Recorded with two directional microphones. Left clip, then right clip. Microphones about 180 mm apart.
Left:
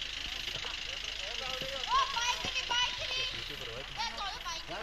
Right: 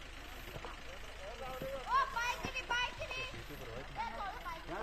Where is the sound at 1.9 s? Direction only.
65° right (ahead or behind).